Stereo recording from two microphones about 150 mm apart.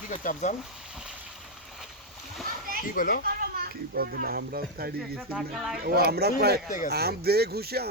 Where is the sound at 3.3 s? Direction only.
85° right.